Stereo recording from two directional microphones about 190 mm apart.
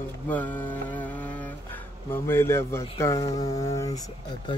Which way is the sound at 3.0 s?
20° left (ahead or behind).